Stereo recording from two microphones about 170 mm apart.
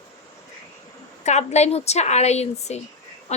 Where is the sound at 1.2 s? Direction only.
40° left (ahead or behind).